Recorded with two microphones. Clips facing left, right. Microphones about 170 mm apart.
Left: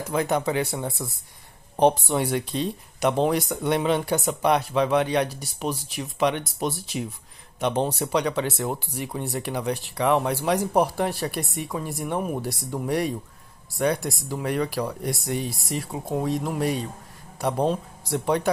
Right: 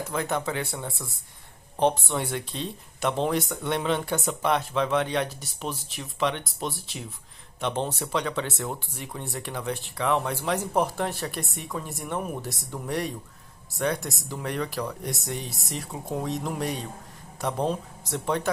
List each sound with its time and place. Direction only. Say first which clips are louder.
0.1 s speech: left 6 dB; 15° left (ahead or behind)
1.9 s speech: left 4 dB; 35° left (ahead or behind)
2.1 s speech: left 6 dB; 15° left (ahead or behind)